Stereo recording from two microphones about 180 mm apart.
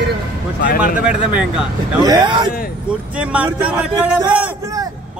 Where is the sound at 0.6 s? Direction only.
55° left (ahead or behind).